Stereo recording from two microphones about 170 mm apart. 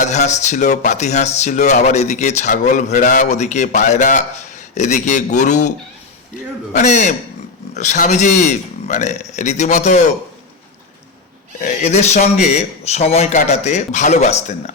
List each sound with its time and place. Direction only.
0.0 s speech: 45° left (ahead or behind)
6.7 s speech: 45° left (ahead or behind)
11.6 s a man's voice: 45° left (ahead or behind)